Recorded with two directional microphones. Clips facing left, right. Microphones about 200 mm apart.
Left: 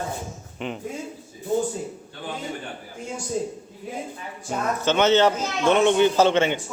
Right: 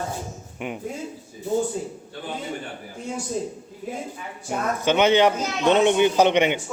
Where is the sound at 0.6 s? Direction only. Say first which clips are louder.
Even; 10° right (ahead or behind).